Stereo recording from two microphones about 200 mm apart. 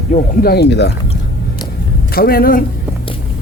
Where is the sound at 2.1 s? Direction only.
50° left (ahead or behind).